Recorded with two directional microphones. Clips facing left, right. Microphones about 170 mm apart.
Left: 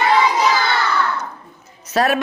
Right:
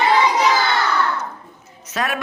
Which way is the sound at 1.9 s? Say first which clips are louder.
Left 7 dB; 35° left (ahead or behind).